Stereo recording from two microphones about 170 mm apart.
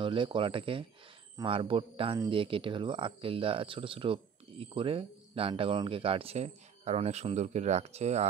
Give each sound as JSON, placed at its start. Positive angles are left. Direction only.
{"t": 0.0, "sound": "speech", "side_deg": -30}